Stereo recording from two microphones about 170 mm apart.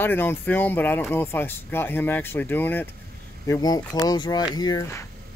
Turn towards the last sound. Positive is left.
turn(degrees=15)  # may be behind; listen again after turning